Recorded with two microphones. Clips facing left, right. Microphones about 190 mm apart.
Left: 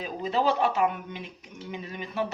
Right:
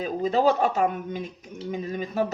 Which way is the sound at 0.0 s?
45° right (ahead or behind).